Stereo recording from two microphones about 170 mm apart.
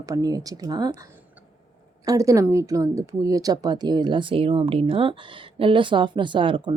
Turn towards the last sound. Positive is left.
turn(degrees=-30)  # may be behind; listen again after turning